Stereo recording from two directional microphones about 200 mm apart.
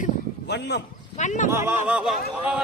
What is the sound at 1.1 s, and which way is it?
Speech, 35° left (ahead or behind).